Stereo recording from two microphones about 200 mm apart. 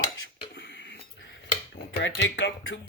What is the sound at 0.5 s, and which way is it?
Dishes, 65° left (ahead or behind).